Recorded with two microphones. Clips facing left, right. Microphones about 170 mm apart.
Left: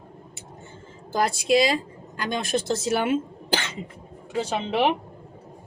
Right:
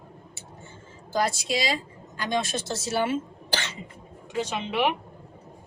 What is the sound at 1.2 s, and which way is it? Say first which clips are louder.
Speech: left 7 dB; 55° left (ahead or behind).